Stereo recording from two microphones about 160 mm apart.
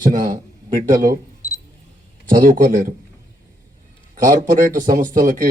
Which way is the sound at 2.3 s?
60° right (ahead or behind).